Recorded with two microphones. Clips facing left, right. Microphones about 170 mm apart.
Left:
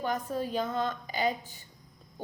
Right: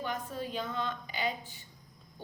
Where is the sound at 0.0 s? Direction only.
40° left (ahead or behind).